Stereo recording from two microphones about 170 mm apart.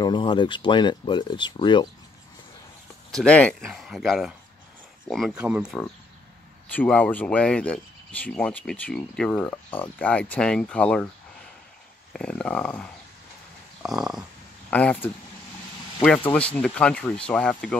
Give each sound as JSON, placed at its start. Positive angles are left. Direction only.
{"t": 0.0, "sound": "speech", "side_deg": 25}
{"t": 3.1, "sound": "speech", "side_deg": 5}
{"t": 6.7, "sound": "speech", "side_deg": 10}
{"t": 12.1, "sound": "speech", "side_deg": 5}